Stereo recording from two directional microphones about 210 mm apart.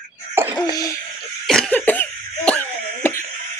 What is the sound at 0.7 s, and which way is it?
Speech, 15° left (ahead or behind).